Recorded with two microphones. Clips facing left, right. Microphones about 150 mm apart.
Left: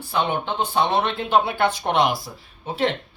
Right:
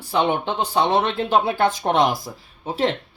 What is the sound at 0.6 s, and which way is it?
Speech, 35° right (ahead or behind).